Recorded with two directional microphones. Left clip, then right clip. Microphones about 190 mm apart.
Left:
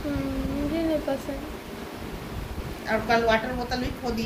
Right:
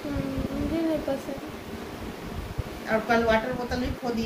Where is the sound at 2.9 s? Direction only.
45° right (ahead or behind).